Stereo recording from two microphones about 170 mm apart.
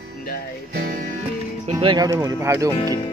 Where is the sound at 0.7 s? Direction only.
55° right (ahead or behind).